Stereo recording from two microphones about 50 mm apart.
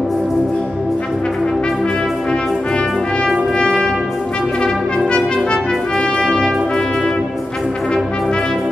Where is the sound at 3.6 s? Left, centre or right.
Centre.